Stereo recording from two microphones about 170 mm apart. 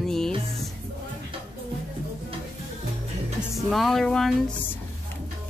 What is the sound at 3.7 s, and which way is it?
Speech, centre (ahead or behind).